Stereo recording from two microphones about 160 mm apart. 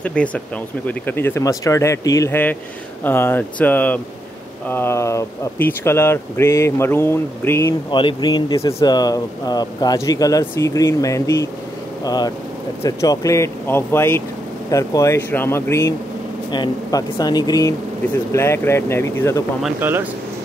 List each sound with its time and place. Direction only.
0.0 s speech: 10° left (ahead or behind)
7.9 s speech: 30° left (ahead or behind)
16.5 s speech: 25° left (ahead or behind)
19.8 s speech: 15° right (ahead or behind)